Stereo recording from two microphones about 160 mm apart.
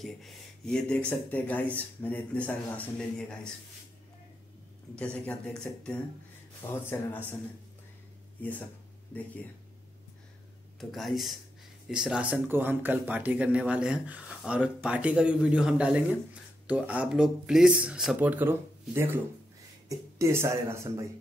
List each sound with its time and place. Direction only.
0.0 s speech: 5° left (ahead or behind)
5.1 s speech: 10° left (ahead or behind)
8.4 s speech: 10° left (ahead or behind)
10.8 s speech: centre (ahead or behind); by 21.1 s 20° right (ahead or behind)